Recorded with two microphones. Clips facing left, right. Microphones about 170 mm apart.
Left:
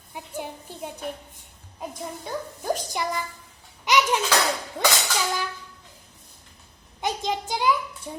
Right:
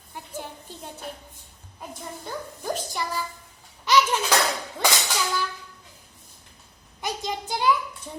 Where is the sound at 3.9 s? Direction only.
20° left (ahead or behind).